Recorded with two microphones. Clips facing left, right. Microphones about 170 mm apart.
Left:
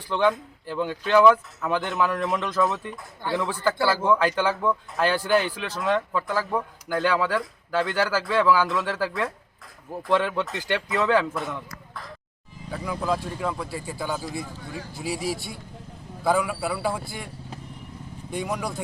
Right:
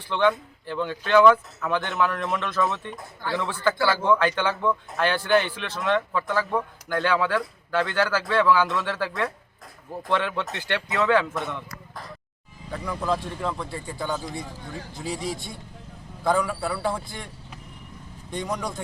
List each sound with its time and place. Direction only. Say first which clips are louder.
0.1 s speech: even; 5° left (ahead or behind)
12.7 s speech: even; 5° left (ahead or behind)
18.3 s speech: left 1 dB; 5° left (ahead or behind)